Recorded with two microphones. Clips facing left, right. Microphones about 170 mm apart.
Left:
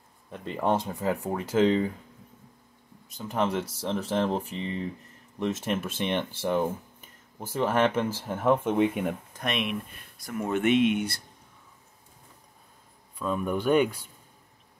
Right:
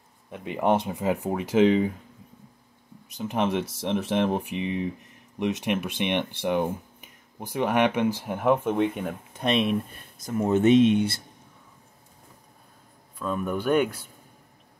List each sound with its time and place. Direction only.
0.3 s speech: 10° right (ahead or behind)
3.2 s speech: 20° right (ahead or behind)
8.6 s speech: centre (ahead or behind)
9.3 s speech: 30° right (ahead or behind)
13.2 s speech: centre (ahead or behind)